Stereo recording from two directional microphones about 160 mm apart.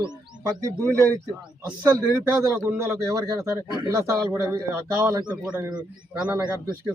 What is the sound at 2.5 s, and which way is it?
Speech, 15° right (ahead or behind).